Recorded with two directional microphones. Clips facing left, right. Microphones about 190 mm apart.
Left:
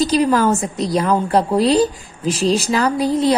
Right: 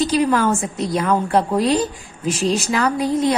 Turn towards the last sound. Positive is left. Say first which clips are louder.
# left 2 dB
turn(degrees=35)  # may be behind; listen again after turning